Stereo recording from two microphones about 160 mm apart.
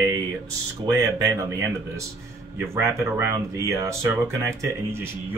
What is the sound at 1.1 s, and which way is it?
Speech, 20° right (ahead or behind).